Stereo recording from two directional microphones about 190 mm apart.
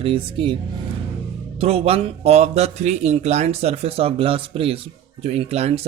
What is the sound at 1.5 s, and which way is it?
Speech, 30° right (ahead or behind).